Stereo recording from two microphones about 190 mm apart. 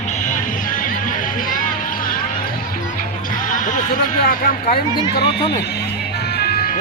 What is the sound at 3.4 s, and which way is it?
Music, 45° left (ahead or behind).